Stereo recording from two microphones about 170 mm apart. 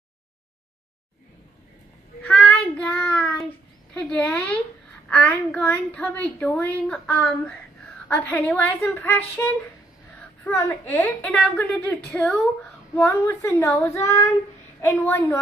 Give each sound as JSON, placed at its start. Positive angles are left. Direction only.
{"t": 2.2, "sound": "child singing", "side_deg": 5}
{"t": 3.9, "sound": "a woman's voice", "side_deg": 5}